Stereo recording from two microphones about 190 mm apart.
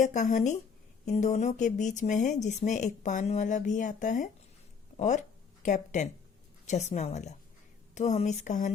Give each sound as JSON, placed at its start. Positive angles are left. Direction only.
{"t": 0.0, "sound": "speech", "side_deg": 40}